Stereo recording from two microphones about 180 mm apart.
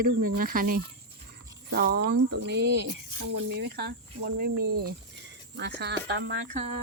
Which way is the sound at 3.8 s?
55° right (ahead or behind).